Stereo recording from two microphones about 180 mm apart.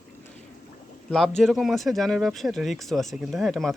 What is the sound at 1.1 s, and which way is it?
Speech, centre (ahead or behind).